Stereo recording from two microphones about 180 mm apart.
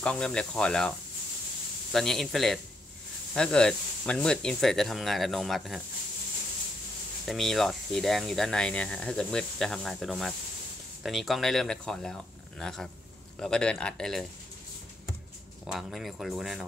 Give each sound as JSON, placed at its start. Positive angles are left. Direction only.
{"t": 0.0, "sound": "speech", "side_deg": 5}
{"t": 7.2, "sound": "speech", "side_deg": 0}
{"t": 15.6, "sound": "speech", "side_deg": 0}